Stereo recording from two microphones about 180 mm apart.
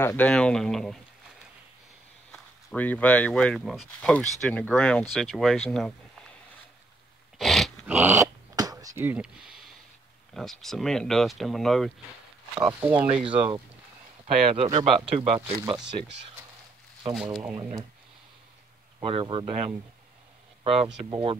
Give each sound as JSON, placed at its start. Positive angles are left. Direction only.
{"t": 0.0, "sound": "speech", "side_deg": 10}
{"t": 2.3, "sound": "speech", "side_deg": 10}
{"t": 7.3, "sound": "dog", "side_deg": 0}
{"t": 7.9, "sound": "dog", "side_deg": -10}
{"t": 10.3, "sound": "speech", "side_deg": 0}
{"t": 12.5, "sound": "speech", "side_deg": -15}
{"t": 14.2, "sound": "speech", "side_deg": -35}
{"t": 17.4, "sound": "speech", "side_deg": -10}
{"t": 19.0, "sound": "speech", "side_deg": -30}